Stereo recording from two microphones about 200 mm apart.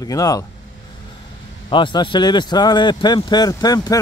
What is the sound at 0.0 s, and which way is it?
Speech, 20° left (ahead or behind).